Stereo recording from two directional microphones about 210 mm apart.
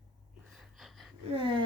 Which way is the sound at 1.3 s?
25° right (ahead or behind).